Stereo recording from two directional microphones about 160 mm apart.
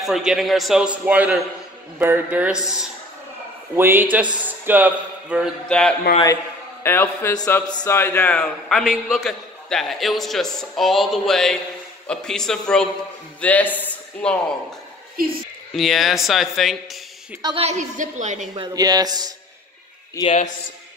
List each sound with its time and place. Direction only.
0.0 s a man's voice: centre (ahead or behind)
5.7 s a man's voice: 5° left (ahead or behind)
15.2 s a woman's voice: 65° right (ahead or behind)
15.7 s a man's voice: centre (ahead or behind)
17.6 s a woman's voice: 45° right (ahead or behind)
18.5 s speech: 25° right (ahead or behind)